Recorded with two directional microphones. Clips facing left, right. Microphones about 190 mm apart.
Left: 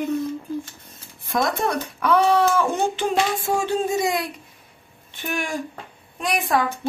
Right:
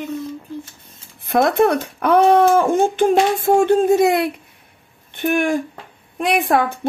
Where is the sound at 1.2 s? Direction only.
60° right (ahead or behind).